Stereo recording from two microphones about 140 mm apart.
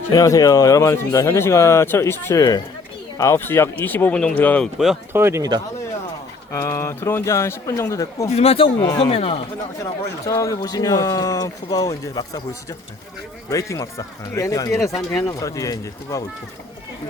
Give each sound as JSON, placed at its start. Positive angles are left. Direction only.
{"t": 0.1, "sound": "speech", "side_deg": 25}
{"t": 5.1, "sound": "speech", "side_deg": -20}
{"t": 6.5, "sound": "speech", "side_deg": 20}
{"t": 8.3, "sound": "speech", "side_deg": 45}
{"t": 9.8, "sound": "speech", "side_deg": 25}
{"t": 13.5, "sound": "speech", "side_deg": 20}